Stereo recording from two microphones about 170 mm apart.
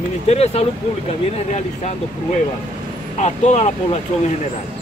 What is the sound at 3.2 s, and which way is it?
Speech, 40° left (ahead or behind).